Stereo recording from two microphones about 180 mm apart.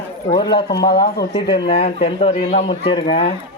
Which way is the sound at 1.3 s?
25° left (ahead or behind).